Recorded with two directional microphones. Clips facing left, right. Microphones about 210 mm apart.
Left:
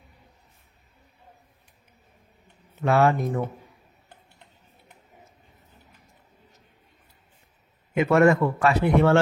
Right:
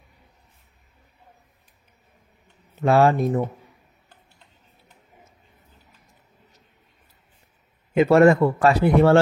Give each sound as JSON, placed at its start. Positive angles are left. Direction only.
{"t": 2.8, "sound": "speech", "side_deg": -30}
{"t": 7.9, "sound": "speech", "side_deg": -30}